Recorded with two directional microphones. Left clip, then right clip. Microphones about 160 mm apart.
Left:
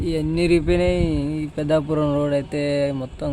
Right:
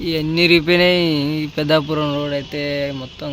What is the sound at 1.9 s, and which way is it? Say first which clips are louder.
Speech: even; 15° left (ahead or behind).